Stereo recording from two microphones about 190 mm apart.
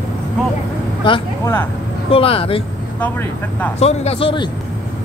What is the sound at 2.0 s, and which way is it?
Speech, 30° left (ahead or behind).